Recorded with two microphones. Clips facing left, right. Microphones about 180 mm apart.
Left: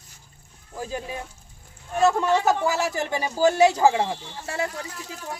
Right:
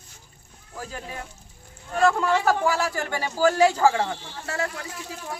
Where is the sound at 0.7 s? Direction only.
15° left (ahead or behind).